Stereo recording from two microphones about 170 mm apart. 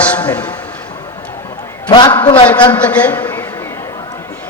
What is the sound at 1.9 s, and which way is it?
Speech, 30° left (ahead or behind).